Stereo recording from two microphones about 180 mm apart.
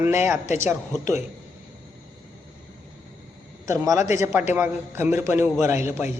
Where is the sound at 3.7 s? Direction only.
15° right (ahead or behind).